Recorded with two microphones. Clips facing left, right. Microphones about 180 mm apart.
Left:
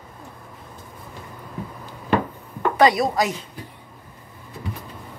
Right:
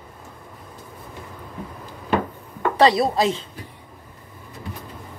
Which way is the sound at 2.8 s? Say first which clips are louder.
Right 1 dB; 30° right (ahead or behind).